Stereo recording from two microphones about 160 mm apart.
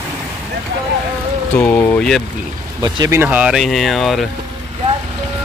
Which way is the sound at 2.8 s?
25° right (ahead or behind).